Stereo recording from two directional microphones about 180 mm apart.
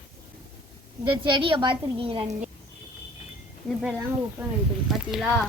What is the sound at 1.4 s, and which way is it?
Speech, 25° right (ahead or behind).